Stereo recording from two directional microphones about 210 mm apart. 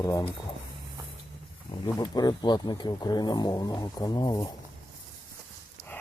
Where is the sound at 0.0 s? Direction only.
15° left (ahead or behind).